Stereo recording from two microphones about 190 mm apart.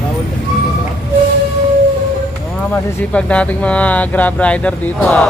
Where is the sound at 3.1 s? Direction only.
5° left (ahead or behind).